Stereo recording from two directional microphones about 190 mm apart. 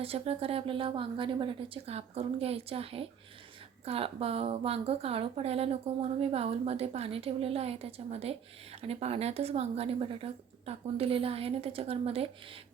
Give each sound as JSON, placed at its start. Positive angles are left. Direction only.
{"t": 0.0, "sound": "a woman's voice", "side_deg": -30}